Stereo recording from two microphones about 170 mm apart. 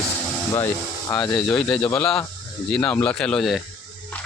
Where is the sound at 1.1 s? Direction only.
20° left (ahead or behind).